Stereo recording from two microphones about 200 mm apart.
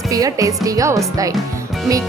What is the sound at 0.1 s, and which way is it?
Speech, 15° right (ahead or behind).